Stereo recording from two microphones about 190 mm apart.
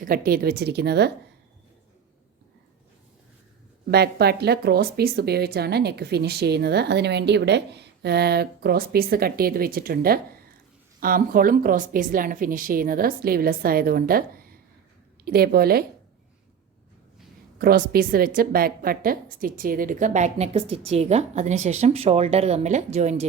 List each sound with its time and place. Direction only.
0.0 s speech: 50° right (ahead or behind)
3.9 s a woman's voice: 55° right (ahead or behind)
17.6 s a woman's voice: 55° right (ahead or behind); by 23.2 s 35° right (ahead or behind)